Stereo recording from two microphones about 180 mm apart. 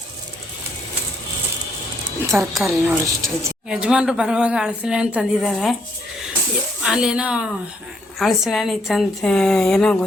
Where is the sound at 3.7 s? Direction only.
5° right (ahead or behind).